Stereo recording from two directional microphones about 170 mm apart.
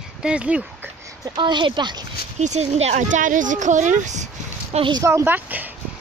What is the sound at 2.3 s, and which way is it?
Speech, 40° right (ahead or behind).